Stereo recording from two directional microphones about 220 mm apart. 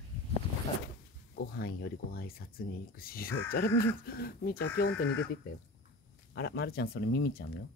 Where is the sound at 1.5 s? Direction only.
45° left (ahead or behind).